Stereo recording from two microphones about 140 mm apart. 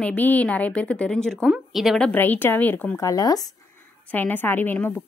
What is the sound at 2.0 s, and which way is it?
Speech, 15° left (ahead or behind).